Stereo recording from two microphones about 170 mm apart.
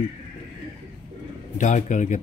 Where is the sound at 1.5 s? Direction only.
45° left (ahead or behind).